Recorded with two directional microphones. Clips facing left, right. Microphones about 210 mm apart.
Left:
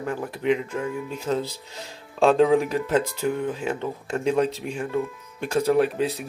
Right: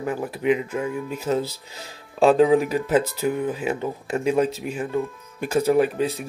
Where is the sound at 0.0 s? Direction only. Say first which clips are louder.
Right 2 dB; 10° right (ahead or behind).